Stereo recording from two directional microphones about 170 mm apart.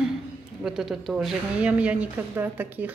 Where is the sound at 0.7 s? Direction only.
Centre (ahead or behind).